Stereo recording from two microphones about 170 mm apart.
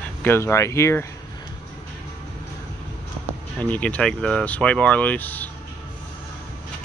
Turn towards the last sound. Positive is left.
turn(degrees=10)  # may be behind; listen again after turning